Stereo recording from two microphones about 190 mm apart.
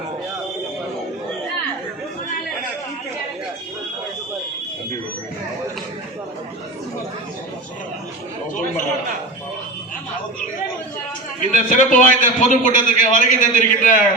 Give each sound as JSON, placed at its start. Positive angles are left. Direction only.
{"t": 11.3, "sound": "a man's voice", "side_deg": 45}